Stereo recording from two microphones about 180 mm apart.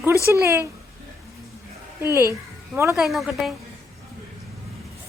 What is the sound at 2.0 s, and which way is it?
Speech, 15° right (ahead or behind).